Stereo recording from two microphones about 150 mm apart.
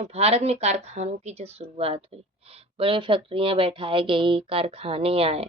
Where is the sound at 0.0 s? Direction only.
45° right (ahead or behind).